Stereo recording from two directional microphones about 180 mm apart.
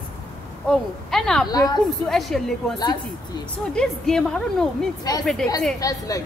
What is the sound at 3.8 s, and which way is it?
Speech, 5° left (ahead or behind).